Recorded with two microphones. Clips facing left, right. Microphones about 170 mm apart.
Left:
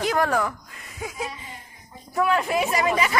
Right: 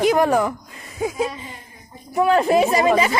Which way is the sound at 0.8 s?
30° right (ahead or behind).